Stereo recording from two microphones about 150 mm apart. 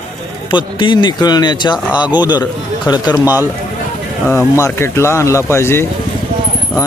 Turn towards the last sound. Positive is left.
turn(degrees=15)  # may be behind; listen again after turning